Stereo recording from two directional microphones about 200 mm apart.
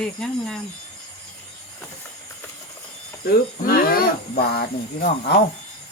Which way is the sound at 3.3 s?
45° left (ahead or behind).